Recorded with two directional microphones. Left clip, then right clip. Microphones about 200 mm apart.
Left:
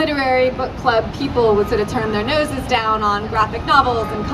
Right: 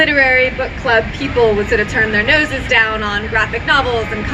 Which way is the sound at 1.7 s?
60° left (ahead or behind).